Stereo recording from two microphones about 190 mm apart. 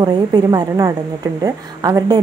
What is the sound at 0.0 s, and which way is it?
A woman's voice, 20° right (ahead or behind).